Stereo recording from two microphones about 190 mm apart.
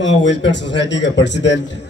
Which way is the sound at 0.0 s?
70° left (ahead or behind).